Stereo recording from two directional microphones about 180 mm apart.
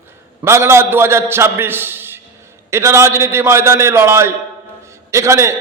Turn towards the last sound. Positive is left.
turn(degrees=-15)  # may be behind; listen again after turning